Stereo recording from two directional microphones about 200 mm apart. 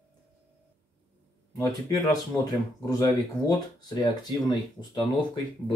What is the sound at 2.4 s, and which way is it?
Speech, 15° left (ahead or behind).